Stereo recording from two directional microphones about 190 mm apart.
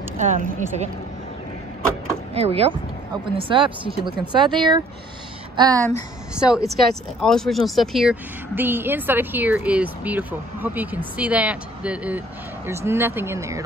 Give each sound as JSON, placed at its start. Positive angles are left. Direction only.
{"t": 0.2, "sound": "speech", "side_deg": -40}
{"t": 2.3, "sound": "speech", "side_deg": -30}
{"t": 6.3, "sound": "speech", "side_deg": -5}